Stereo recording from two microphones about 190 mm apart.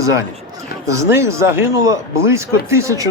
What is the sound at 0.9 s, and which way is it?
Speech, 15° right (ahead or behind).